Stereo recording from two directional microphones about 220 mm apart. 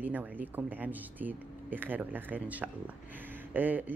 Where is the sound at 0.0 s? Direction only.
10° right (ahead or behind).